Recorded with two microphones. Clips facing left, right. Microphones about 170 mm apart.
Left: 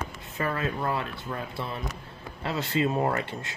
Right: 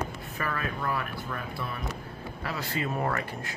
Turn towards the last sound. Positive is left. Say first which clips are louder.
# left 3 dB
turn(degrees=25)  # may be behind; listen again after turning